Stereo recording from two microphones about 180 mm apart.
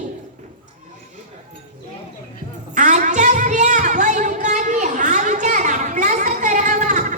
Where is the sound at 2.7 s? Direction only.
45° right (ahead or behind).